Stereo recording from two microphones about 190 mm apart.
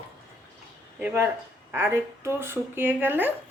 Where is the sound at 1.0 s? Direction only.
10° right (ahead or behind).